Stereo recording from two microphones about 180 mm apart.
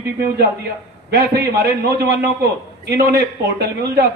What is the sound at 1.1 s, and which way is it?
A woman's voice, 65° right (ahead or behind).